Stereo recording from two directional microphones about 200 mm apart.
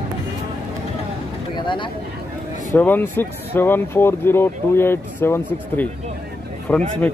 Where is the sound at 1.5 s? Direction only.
25° left (ahead or behind).